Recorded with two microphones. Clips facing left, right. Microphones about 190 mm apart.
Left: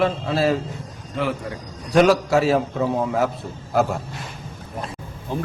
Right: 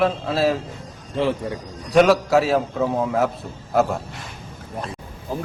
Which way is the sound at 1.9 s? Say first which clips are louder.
Right 1 dB; centre (ahead or behind).